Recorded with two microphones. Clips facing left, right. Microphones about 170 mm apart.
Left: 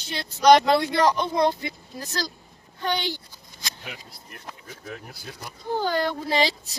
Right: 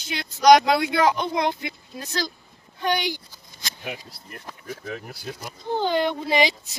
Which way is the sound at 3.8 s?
50° right (ahead or behind).